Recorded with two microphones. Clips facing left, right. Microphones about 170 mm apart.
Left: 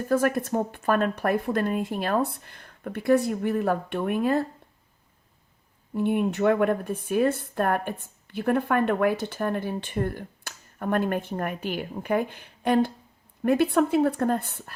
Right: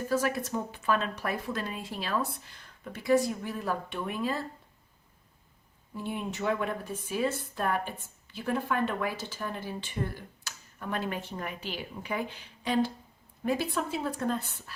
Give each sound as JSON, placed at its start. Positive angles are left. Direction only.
{"t": 0.1, "sound": "speech", "side_deg": 55}
{"t": 5.9, "sound": "speech", "side_deg": 60}